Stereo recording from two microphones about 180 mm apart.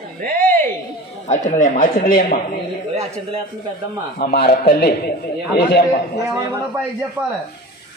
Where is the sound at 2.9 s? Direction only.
35° right (ahead or behind).